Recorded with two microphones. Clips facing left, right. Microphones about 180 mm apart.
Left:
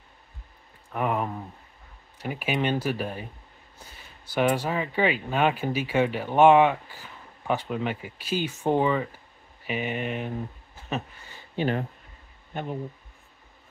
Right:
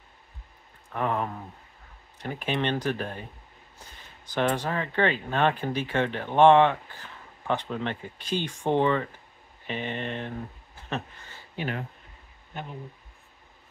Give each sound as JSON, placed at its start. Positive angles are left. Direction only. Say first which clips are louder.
{"t": 0.9, "sound": "speech", "louder": "left 1 dB", "side_deg": 10}
{"t": 11.5, "sound": "speech", "louder": "left 6 dB", "side_deg": 30}